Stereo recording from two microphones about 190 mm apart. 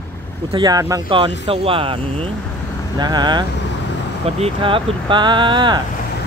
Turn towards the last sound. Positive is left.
turn(degrees=-25)  # may be behind; listen again after turning